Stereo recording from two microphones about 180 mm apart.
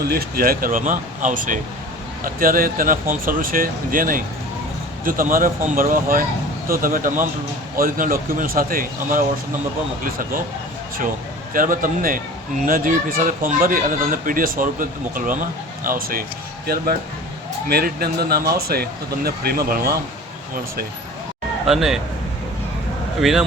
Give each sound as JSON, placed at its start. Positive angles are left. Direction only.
{"t": 0.1, "sound": "speech", "side_deg": -55}
{"t": 11.5, "sound": "speech", "side_deg": -50}
{"t": 17.7, "sound": "speech", "side_deg": -60}
{"t": 21.7, "sound": "speech", "side_deg": 0}